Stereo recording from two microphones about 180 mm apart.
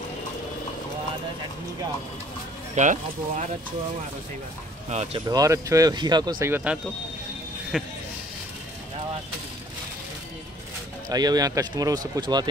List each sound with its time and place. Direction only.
2.7 s speech: 45° right (ahead or behind)
4.8 s speech: 35° right (ahead or behind)
5.2 s speech: 15° right (ahead or behind)
6.4 s speech: 10° right (ahead or behind)
7.7 s speech: centre (ahead or behind)
11.1 s speech: 20° right (ahead or behind)